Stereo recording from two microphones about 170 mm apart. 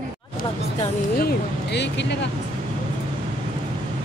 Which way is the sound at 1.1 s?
70° left (ahead or behind).